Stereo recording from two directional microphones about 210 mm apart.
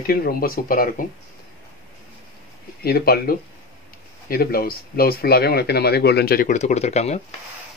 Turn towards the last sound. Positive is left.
turn(degrees=30)  # may be behind; listen again after turning